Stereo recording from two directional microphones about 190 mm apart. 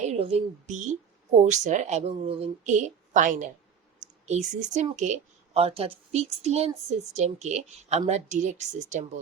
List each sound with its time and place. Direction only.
0.0 s a woman's voice: 35° right (ahead or behind)